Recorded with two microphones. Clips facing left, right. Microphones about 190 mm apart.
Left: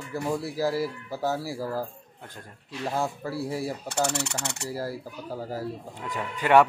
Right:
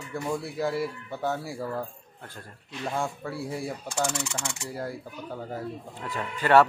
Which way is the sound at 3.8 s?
65° left (ahead or behind).